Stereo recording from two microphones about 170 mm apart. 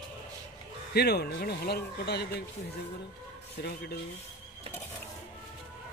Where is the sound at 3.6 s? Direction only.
65° left (ahead or behind).